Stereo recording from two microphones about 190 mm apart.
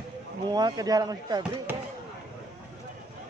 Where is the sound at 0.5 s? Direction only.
20° right (ahead or behind).